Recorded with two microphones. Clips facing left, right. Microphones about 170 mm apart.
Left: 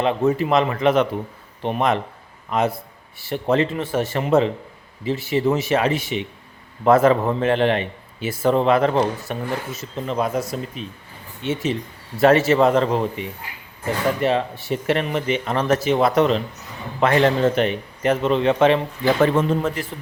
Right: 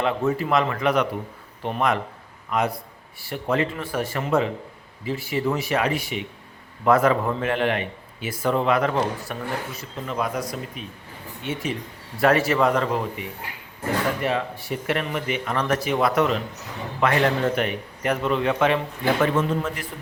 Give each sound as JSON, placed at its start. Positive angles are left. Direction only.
{"t": 0.0, "sound": "a man's voice", "side_deg": 20}